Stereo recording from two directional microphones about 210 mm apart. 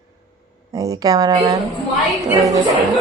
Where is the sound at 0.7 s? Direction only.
15° right (ahead or behind).